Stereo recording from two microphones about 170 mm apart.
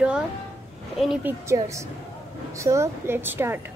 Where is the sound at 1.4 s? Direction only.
15° right (ahead or behind).